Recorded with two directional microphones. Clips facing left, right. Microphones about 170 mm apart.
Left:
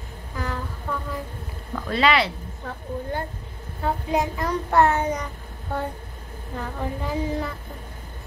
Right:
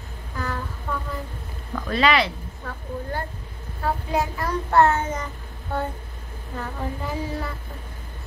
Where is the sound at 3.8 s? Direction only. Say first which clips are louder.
Left 1 dB; 15° left (ahead or behind).